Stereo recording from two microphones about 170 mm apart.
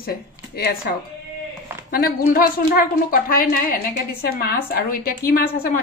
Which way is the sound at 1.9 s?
60° left (ahead or behind).